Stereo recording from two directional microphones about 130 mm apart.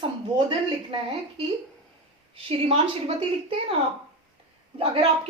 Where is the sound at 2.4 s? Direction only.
45° right (ahead or behind).